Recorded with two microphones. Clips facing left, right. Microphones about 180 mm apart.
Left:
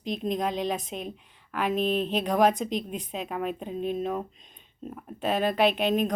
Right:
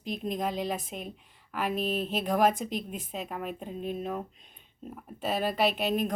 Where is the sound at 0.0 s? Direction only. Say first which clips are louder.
Left 3 dB; 5° right (ahead or behind).